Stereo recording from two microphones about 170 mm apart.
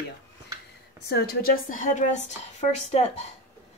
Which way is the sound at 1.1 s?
65° left (ahead or behind).